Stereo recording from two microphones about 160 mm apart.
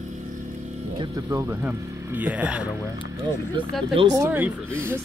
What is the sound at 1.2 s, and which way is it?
Speech, 15° right (ahead or behind).